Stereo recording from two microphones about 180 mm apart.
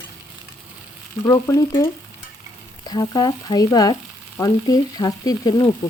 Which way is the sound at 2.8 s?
25° left (ahead or behind).